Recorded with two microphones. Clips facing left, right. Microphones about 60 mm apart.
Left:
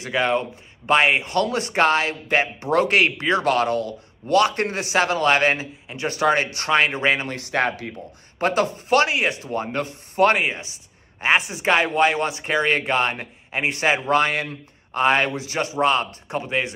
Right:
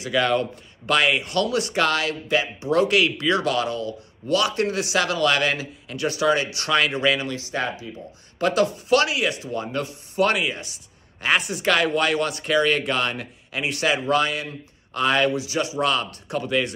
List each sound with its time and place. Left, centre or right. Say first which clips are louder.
0.2 s speech: left 1 dB; left
8.4 s speech: even; left
11.1 s speech: left 2 dB; left